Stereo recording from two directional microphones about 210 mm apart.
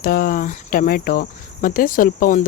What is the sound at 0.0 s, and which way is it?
Cricket, 45° left (ahead or behind).